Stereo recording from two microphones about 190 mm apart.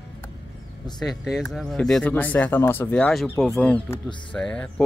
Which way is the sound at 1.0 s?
Centre (ahead or behind).